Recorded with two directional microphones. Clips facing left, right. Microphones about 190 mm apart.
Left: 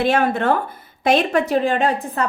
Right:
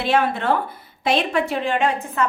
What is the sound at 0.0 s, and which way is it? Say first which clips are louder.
A woman's voice: left 3 dB; 45° left (ahead or behind).